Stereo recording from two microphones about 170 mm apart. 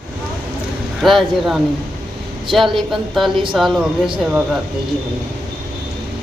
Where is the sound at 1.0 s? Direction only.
Centre (ahead or behind).